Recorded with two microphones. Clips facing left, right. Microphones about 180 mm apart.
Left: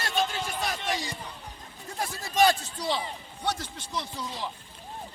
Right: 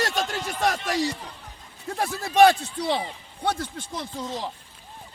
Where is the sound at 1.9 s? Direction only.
65° right (ahead or behind).